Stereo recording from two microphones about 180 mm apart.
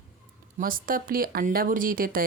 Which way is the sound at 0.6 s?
50° right (ahead or behind).